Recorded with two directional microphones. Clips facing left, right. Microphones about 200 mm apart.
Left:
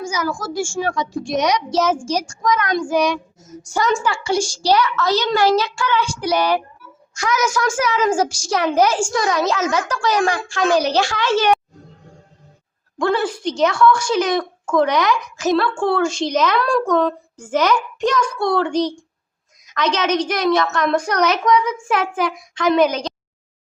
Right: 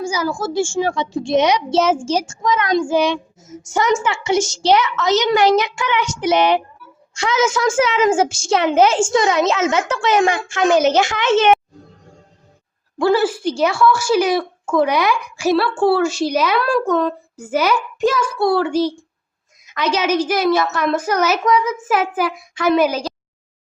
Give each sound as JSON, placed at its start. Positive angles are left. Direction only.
{"t": 0.0, "sound": "a child's voice", "side_deg": -30}
{"t": 13.0, "sound": "a woman's voice", "side_deg": -5}